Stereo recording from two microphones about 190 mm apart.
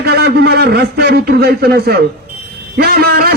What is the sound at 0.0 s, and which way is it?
A man's voice, 60° right (ahead or behind).